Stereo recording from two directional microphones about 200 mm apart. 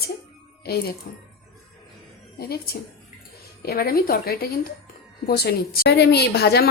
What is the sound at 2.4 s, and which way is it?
A woman's voice, 50° left (ahead or behind).